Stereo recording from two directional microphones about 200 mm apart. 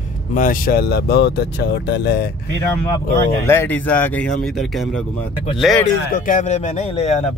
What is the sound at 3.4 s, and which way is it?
Speech, 10° left (ahead or behind).